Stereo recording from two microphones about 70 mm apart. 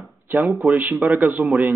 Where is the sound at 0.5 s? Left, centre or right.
Centre.